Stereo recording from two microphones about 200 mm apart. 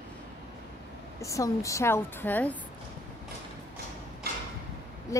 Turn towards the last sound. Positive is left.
turn(degrees=15)  # may be behind; listen again after turning